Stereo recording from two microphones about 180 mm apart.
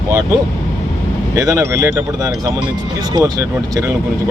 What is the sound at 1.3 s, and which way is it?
Speech, 15° right (ahead or behind).